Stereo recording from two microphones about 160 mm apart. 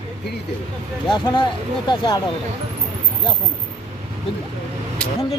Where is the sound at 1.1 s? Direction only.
30° left (ahead or behind).